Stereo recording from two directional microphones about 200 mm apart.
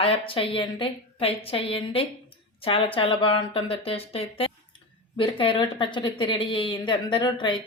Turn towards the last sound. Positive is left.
turn(degrees=25)  # may be behind; listen again after turning